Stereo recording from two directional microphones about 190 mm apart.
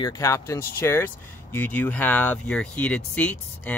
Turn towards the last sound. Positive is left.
turn(degrees=10)  # may be behind; listen again after turning